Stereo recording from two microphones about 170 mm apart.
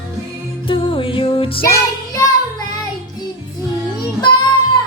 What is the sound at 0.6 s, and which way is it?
Music, 30° left (ahead or behind).